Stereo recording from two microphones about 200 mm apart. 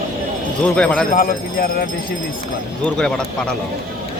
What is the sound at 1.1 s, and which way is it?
Speech, 45° left (ahead or behind).